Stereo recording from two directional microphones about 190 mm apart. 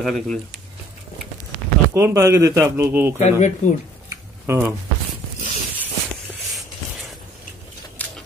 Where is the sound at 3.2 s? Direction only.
40° left (ahead or behind).